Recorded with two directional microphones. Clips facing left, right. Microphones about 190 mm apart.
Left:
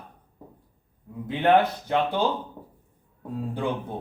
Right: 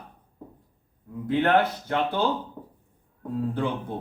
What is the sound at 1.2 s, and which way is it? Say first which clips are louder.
Speech: left 1 dB; 15° left (ahead or behind).